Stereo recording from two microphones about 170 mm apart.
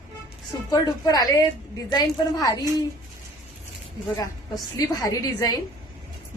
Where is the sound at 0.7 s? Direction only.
20° left (ahead or behind).